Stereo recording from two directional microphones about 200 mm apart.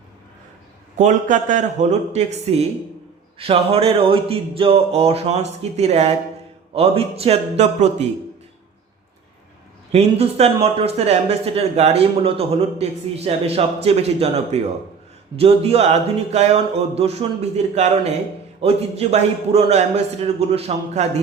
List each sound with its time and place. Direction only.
0.9 s speech: 40° right (ahead or behind)
9.9 s speech: 30° right (ahead or behind)